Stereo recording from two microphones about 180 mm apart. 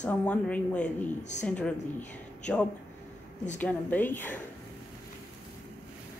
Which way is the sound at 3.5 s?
10° left (ahead or behind).